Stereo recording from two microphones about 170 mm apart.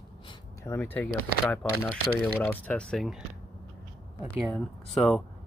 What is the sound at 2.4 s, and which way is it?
Speech, 5° left (ahead or behind).